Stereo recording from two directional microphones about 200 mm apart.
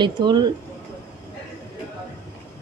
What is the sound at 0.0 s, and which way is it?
Speech, 20° right (ahead or behind).